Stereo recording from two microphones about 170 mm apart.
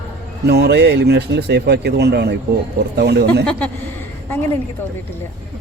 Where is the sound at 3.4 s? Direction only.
10° left (ahead or behind).